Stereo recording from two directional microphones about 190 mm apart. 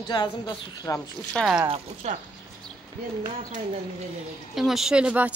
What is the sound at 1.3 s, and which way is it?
Speech, centre (ahead or behind).